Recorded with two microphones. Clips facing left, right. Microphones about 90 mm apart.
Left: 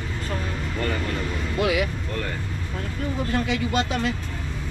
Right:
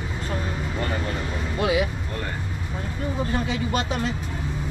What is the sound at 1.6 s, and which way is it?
Speech, 25° right (ahead or behind).